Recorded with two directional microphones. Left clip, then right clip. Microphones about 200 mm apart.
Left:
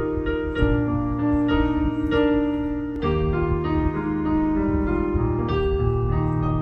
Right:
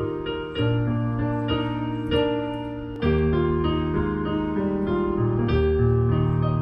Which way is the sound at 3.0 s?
45° right (ahead or behind).